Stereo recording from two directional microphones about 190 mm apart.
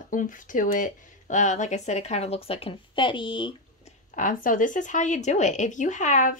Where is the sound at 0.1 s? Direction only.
45° left (ahead or behind); by 3.5 s 25° left (ahead or behind).